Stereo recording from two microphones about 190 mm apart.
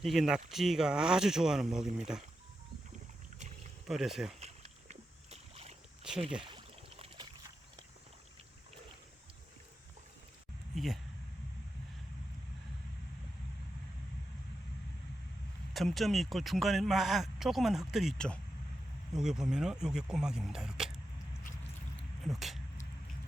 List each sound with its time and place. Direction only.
0.0 s speech: centre (ahead or behind)
3.8 s speech: centre (ahead or behind)
4.4 s rowboat: 35° right (ahead or behind)
6.4 s a sound: 30° right (ahead or behind)
10.8 s speech: centre (ahead or behind)
15.7 s speech: centre (ahead or behind)
22.3 s speech: centre (ahead or behind)